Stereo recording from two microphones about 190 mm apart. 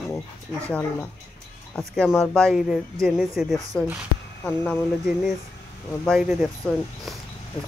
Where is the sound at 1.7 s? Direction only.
Centre (ahead or behind).